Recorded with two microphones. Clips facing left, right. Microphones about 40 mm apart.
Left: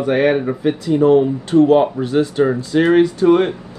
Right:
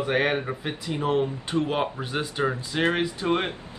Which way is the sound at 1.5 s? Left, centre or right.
Centre.